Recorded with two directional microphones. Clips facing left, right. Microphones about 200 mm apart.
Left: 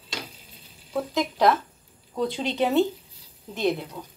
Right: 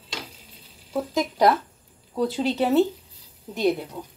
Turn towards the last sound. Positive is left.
turn(degrees=-10)  # may be behind; listen again after turning